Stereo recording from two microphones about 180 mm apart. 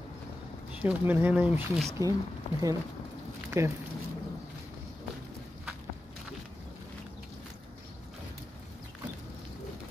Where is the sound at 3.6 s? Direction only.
15° right (ahead or behind).